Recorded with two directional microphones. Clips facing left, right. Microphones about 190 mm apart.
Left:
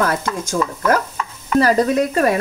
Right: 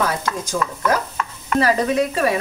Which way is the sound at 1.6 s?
40° left (ahead or behind).